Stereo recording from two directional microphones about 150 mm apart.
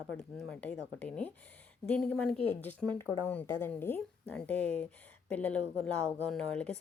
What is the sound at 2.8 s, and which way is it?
Speech, 30° right (ahead or behind).